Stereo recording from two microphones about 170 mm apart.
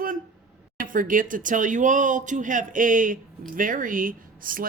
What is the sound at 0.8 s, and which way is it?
Speech, 50° right (ahead or behind).